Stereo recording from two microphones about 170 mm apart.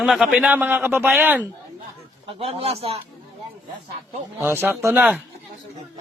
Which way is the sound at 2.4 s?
35° right (ahead or behind).